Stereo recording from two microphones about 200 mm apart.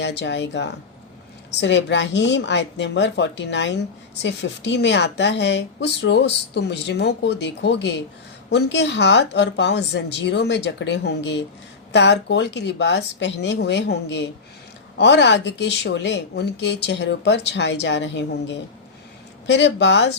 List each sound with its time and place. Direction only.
0.0 s a woman's voice: 60° left (ahead or behind)